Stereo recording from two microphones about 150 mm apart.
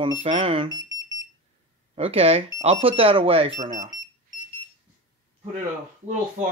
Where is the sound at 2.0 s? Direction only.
40° right (ahead or behind).